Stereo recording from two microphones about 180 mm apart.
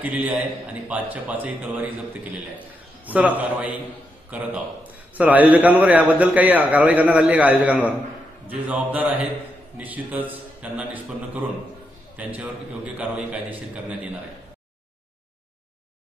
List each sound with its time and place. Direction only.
0.0 s a man's voice: 10° right (ahead or behind)
3.1 s a man's voice: 10° right (ahead or behind)